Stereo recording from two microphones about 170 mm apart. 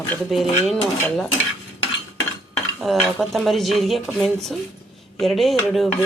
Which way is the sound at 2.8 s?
Centre (ahead or behind).